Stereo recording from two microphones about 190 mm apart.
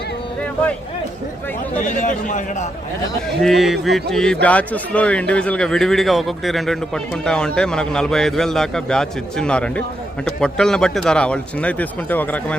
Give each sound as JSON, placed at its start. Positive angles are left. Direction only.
{"t": 0.4, "sound": "a sound", "side_deg": 5}
{"t": 1.8, "sound": "a man's voice", "side_deg": 40}
{"t": 3.4, "sound": "a man's voice", "side_deg": 0}